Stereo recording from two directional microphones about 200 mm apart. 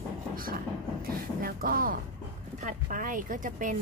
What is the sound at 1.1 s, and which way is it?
Speech, 45° right (ahead or behind).